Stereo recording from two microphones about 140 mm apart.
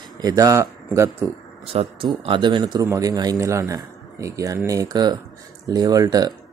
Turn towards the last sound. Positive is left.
turn(degrees=-25)  # may be behind; listen again after turning